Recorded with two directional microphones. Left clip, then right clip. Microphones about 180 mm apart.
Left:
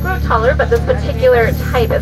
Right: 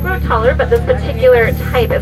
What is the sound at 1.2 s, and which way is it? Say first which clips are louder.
Speech: right 2 dB; 15° right (ahead or behind).